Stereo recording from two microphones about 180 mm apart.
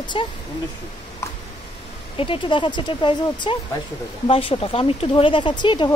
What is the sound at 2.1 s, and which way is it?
Speech, 30° left (ahead or behind).